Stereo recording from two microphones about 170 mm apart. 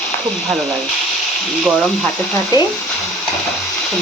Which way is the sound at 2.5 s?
20° left (ahead or behind).